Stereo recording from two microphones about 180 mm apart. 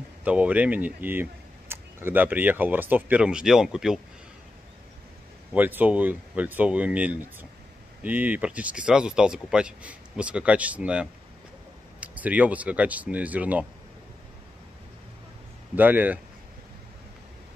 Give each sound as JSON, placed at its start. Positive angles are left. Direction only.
{"t": 0.2, "sound": "speech", "side_deg": -5}
{"t": 5.5, "sound": "speech", "side_deg": -10}
{"t": 15.7, "sound": "speech", "side_deg": -10}